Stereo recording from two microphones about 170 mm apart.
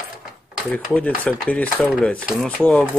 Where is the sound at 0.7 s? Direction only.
10° left (ahead or behind).